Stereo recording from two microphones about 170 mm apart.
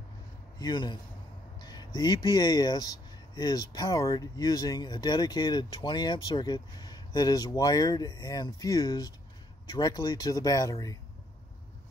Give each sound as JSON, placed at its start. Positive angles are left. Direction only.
{"t": 0.6, "sound": "speech", "side_deg": 25}